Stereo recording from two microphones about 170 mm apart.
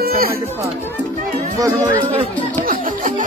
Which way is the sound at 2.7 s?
50° right (ahead or behind).